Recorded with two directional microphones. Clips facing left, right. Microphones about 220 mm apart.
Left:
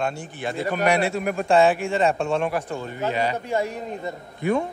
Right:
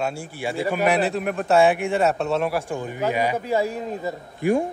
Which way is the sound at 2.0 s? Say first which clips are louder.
Left 1 dB; 5° right (ahead or behind).